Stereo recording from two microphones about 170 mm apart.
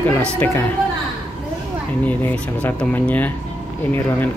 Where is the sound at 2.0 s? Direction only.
10° left (ahead or behind).